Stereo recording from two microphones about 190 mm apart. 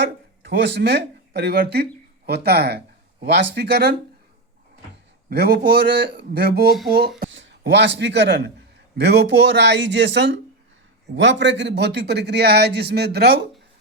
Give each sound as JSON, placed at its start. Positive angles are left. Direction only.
{"t": 0.5, "sound": "a man's voice", "side_deg": -65}
{"t": 5.3, "sound": "a man's voice", "side_deg": -60}
{"t": 7.2, "sound": "a man's voice", "side_deg": -70}